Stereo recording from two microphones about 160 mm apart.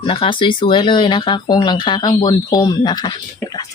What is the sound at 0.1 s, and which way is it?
A woman's voice, 35° left (ahead or behind).